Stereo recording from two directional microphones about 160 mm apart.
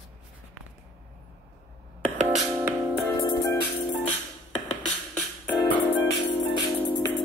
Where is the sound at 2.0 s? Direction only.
45° right (ahead or behind).